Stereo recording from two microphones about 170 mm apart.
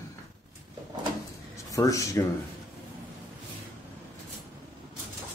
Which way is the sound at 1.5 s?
20° left (ahead or behind).